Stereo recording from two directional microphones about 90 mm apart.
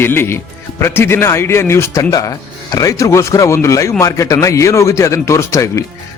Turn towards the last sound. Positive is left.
turn(degrees=35)  # may be behind; listen again after turning